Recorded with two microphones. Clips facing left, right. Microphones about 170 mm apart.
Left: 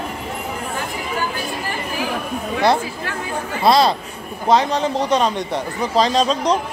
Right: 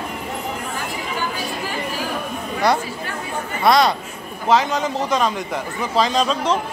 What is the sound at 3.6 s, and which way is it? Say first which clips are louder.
A man's voice: left 1 dB; 30° left (ahead or behind).